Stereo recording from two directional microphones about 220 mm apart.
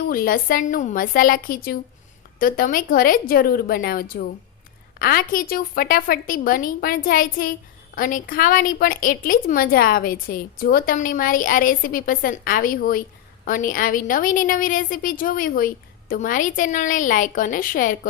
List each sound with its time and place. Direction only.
0.1 s a woman's voice: 40° left (ahead or behind)